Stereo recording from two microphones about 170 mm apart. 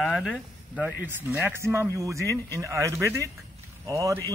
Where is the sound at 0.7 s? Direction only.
10° right (ahead or behind).